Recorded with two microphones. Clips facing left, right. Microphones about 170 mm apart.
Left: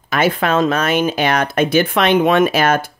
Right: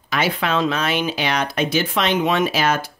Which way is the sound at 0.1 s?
50° left (ahead or behind).